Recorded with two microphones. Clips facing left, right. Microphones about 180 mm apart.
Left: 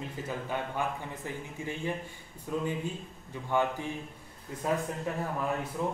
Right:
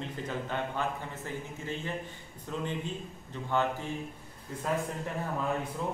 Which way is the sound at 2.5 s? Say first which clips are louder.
Left 2 dB; 10° left (ahead or behind).